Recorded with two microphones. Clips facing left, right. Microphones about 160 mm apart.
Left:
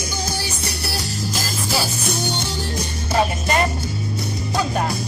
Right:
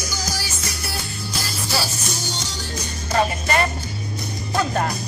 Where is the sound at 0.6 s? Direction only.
80° left.